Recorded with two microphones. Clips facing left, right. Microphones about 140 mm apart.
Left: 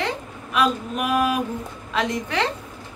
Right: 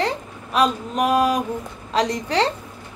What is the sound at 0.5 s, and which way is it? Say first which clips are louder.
A woman's voice: right 2 dB; 40° right (ahead or behind).